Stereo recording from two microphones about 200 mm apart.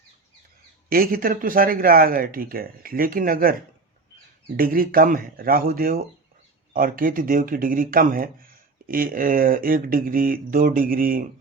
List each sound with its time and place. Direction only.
0.9 s speech: 45° right (ahead or behind)
4.5 s speech: 45° right (ahead or behind)